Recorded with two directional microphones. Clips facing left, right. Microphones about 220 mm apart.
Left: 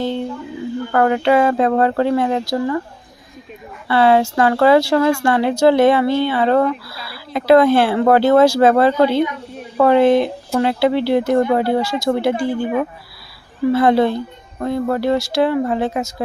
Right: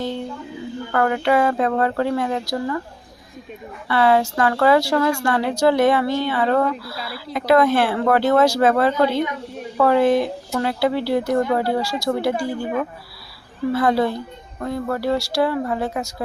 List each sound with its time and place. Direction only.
0.9 s speech: 25° left (ahead or behind)
3.8 s speech: 30° left (ahead or behind)
6.8 s speech: 25° right (ahead or behind)
7.3 s speech: 30° left (ahead or behind)
13.7 s speech: 25° left (ahead or behind)